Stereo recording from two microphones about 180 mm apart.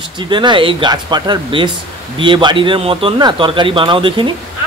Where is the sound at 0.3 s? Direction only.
25° right (ahead or behind).